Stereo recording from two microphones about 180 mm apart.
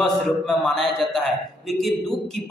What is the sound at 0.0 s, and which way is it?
Speech, centre (ahead or behind).